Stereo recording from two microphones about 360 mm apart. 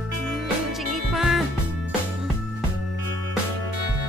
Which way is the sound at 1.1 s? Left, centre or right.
Centre.